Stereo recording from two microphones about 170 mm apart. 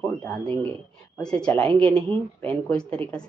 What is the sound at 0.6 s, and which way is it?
Speech, 10° left (ahead or behind).